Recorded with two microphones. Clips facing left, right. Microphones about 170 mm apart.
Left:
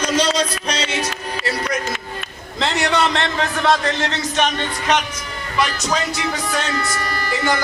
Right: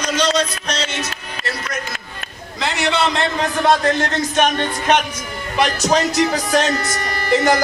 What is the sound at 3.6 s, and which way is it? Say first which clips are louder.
Music: right 3 dB; 50° right (ahead or behind).